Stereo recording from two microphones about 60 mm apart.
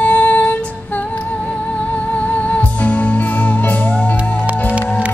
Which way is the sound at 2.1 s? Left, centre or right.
Left.